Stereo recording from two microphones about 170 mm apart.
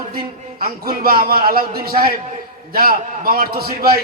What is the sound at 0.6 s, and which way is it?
A man's voice, 60° right (ahead or behind).